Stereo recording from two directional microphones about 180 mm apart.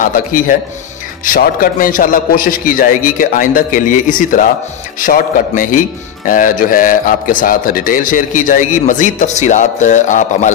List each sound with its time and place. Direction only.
0.0 s a man's voice: 50° left (ahead or behind)